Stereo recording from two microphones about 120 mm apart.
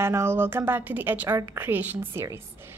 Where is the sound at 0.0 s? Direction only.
20° right (ahead or behind).